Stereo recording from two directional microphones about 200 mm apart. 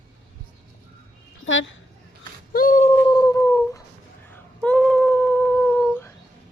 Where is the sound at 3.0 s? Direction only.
20° left (ahead or behind).